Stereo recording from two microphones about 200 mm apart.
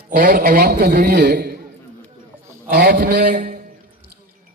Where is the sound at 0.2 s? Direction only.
50° right (ahead or behind).